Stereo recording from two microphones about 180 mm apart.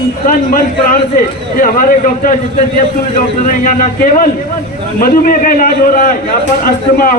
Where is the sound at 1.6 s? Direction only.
50° left (ahead or behind).